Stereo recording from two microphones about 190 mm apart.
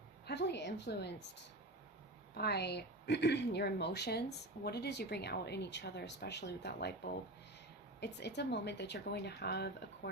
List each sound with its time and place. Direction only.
0.3 s speech: 60° left (ahead or behind)